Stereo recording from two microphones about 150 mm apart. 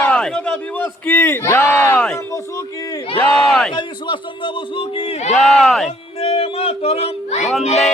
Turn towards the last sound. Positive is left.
turn(degrees=45)  # may be behind; listen again after turning